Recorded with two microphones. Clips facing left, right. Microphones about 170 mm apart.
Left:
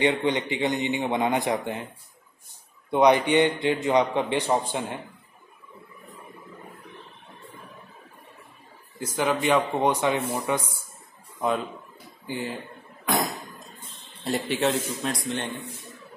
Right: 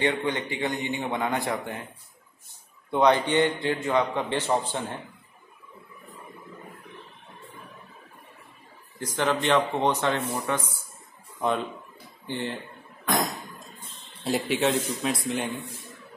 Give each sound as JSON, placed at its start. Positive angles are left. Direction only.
{"t": 0.0, "sound": "a man's voice", "side_deg": 20}
{"t": 2.9, "sound": "a man's voice", "side_deg": 15}
{"t": 9.0, "sound": "a man's voice", "side_deg": 10}
{"t": 14.2, "sound": "speech", "side_deg": 0}